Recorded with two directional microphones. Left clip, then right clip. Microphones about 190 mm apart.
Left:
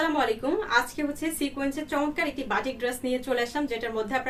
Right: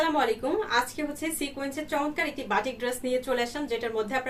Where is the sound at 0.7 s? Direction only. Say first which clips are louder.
Left 2 dB; 15° left (ahead or behind).